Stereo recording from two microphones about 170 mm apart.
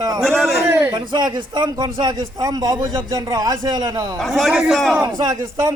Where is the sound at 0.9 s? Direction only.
25° right (ahead or behind).